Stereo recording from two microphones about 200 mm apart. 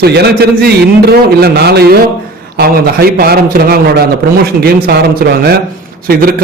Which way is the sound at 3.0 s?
50° right (ahead or behind).